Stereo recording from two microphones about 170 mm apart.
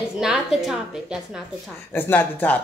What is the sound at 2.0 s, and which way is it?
Speech, 10° left (ahead or behind).